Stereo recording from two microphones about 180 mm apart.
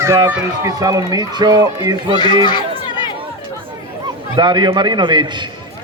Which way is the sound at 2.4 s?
25° left (ahead or behind).